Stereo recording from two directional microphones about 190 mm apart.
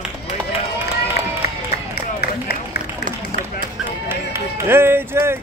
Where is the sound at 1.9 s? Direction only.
55° left (ahead or behind).